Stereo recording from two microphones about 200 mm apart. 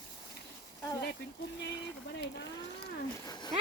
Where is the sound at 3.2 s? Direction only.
20° left (ahead or behind).